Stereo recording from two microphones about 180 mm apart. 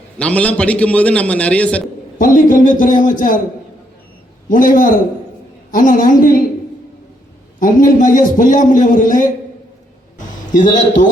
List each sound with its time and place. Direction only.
0.2 s a man's voice: 5° left (ahead or behind)
2.1 s a man's voice: 50° left (ahead or behind)
4.4 s a man's voice: 50° left (ahead or behind)
7.6 s a man's voice: 45° left (ahead or behind)
10.5 s a man's voice: 45° left (ahead or behind)